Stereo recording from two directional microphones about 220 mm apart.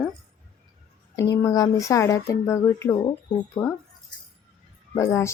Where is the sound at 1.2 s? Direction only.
15° left (ahead or behind).